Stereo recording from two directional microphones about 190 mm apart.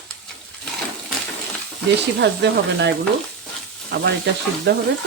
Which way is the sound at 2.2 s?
65° right (ahead or behind).